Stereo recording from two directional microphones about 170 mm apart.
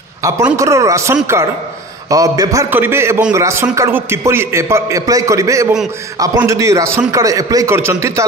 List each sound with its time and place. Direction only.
0.6 s a man's voice: 20° right (ahead or behind)